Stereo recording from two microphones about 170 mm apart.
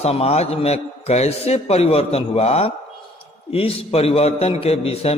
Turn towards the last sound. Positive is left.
turn(degrees=35)  # may be behind; listen again after turning